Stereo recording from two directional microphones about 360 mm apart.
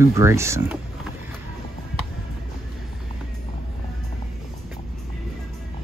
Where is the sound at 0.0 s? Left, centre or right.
Centre.